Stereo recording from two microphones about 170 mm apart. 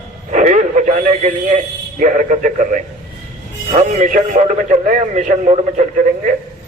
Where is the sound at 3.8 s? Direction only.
45° right (ahead or behind).